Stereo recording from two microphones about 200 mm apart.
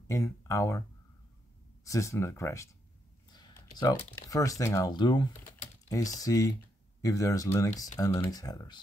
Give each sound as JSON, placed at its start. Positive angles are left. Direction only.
{"t": 0.1, "sound": "speech", "side_deg": 15}
{"t": 1.9, "sound": "speech", "side_deg": 15}
{"t": 3.3, "sound": "a sound", "side_deg": 20}
{"t": 4.1, "sound": "speech", "side_deg": 15}